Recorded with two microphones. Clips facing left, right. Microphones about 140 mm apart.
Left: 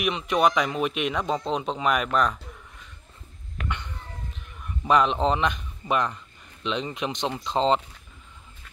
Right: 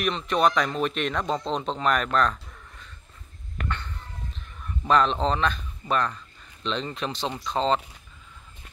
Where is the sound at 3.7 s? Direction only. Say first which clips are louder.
Left 1 dB; 15° left (ahead or behind).